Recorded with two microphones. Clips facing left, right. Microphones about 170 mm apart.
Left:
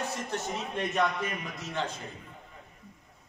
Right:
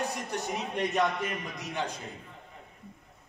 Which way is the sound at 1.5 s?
15° right (ahead or behind).